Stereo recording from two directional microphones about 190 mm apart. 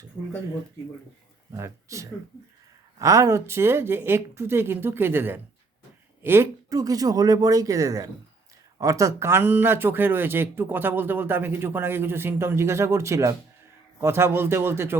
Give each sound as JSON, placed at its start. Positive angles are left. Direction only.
{"t": 1.5, "sound": "speech", "side_deg": -15}